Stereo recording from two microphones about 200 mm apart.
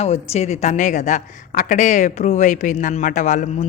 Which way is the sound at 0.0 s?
35° left (ahead or behind).